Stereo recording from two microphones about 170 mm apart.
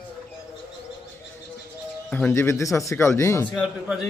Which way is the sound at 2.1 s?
15° left (ahead or behind).